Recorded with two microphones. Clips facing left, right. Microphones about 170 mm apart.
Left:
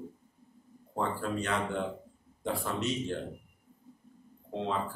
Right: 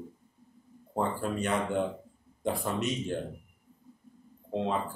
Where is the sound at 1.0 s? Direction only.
15° right (ahead or behind).